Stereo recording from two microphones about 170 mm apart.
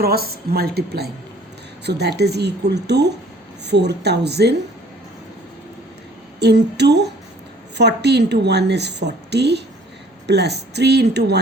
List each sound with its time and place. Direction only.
0.0 s a woman's voice: 65° right (ahead or behind)
6.4 s a woman's voice: 80° right